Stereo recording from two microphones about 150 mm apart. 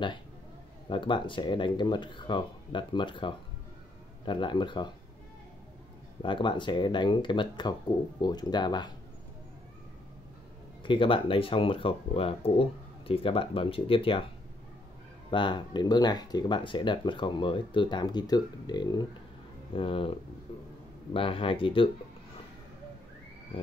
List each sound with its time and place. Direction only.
0.8 s speech: 30° left (ahead or behind)
6.2 s speech: 30° left (ahead or behind)
10.8 s speech: 35° left (ahead or behind)
15.3 s speech: 30° left (ahead or behind)
21.1 s speech: 35° left (ahead or behind)